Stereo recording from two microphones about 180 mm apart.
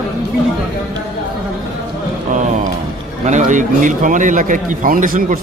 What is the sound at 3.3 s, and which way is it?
A man's voice, 45° right (ahead or behind).